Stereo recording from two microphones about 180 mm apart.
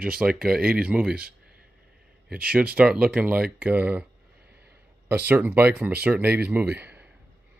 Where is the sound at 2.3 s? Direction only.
5° right (ahead or behind).